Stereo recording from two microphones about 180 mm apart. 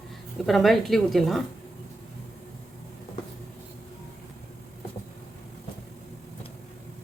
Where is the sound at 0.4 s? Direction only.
Centre (ahead or behind).